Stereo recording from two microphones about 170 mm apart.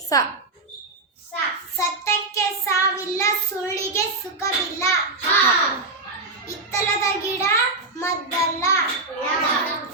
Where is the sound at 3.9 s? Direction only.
20° left (ahead or behind).